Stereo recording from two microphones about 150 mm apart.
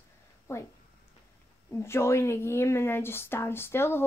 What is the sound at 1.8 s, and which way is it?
A woman's voice, 15° left (ahead or behind).